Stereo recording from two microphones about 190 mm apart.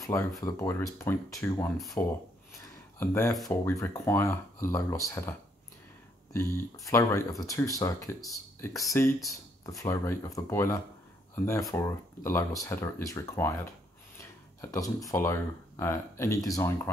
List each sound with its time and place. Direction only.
0.4 s speech: 15° left (ahead or behind)
6.3 s speech: 15° left (ahead or behind)